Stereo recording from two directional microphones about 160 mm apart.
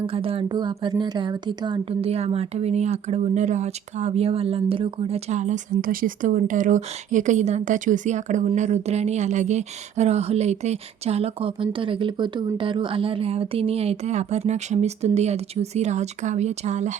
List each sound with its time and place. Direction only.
0.0 s a woman's voice: 35° right (ahead or behind)